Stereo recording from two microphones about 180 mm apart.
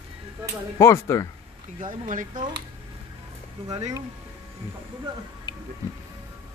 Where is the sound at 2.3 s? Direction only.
25° right (ahead or behind).